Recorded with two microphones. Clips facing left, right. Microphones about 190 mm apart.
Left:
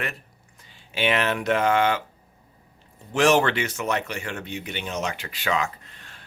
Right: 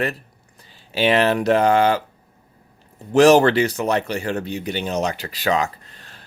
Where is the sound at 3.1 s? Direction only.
35° right (ahead or behind).